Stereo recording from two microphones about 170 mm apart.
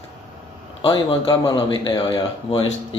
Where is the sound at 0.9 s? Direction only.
25° left (ahead or behind).